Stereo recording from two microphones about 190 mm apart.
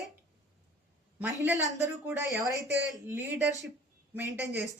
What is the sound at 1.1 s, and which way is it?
Speech, 10° right (ahead or behind).